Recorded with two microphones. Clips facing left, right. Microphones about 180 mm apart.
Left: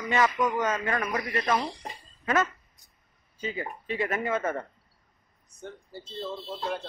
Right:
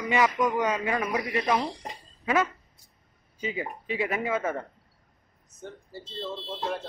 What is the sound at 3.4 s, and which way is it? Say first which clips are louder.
Speech: right 1 dB; 15° right (ahead or behind).